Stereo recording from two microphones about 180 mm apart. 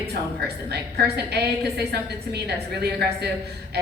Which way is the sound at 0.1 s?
65° right (ahead or behind).